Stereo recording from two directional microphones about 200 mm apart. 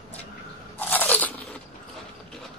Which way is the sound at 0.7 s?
10° left (ahead or behind).